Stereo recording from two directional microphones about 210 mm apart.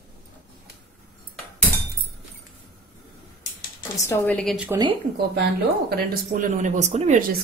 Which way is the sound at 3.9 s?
15° left (ahead or behind).